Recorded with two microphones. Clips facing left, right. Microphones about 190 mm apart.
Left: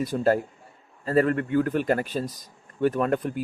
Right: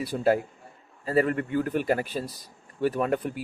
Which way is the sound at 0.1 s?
Centre (ahead or behind).